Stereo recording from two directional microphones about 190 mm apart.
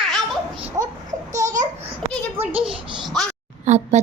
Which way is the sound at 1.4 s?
15° right (ahead or behind).